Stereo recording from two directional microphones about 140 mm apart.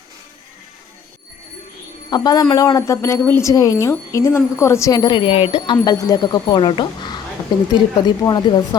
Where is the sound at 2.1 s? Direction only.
30° left (ahead or behind).